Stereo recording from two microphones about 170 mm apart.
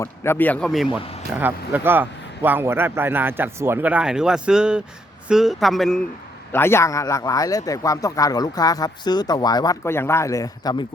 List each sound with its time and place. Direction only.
0.0 s speech: 15° left (ahead or behind)
0.9 s speech: 30° left (ahead or behind)
1.3 s a man's voice: 10° right (ahead or behind)
6.5 s a man's voice: 15° left (ahead or behind)